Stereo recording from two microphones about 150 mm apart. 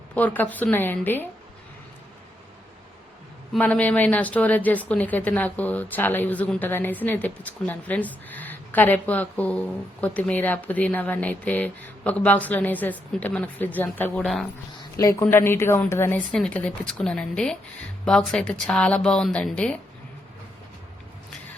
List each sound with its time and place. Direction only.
0.1 s a woman's voice: 10° left (ahead or behind)
3.6 s a woman's voice: 10° left (ahead or behind)